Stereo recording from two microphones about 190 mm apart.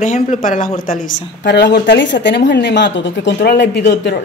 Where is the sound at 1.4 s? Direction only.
60° left (ahead or behind).